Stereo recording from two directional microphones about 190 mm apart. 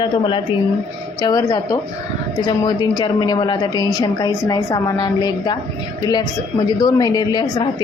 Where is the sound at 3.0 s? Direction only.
20° left (ahead or behind).